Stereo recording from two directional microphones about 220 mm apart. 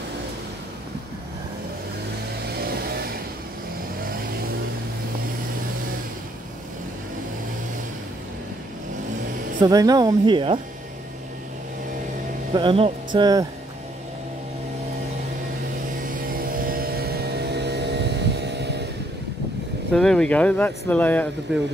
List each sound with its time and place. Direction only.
9.6 s speech: 15° right (ahead or behind)
12.5 s speech: 25° right (ahead or behind)
16.3 s vehicle: 40° right (ahead or behind)
19.9 s speech: 5° left (ahead or behind)